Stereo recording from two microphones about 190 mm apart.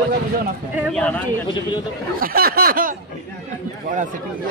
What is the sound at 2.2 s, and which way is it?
Snicker, 50° right (ahead or behind).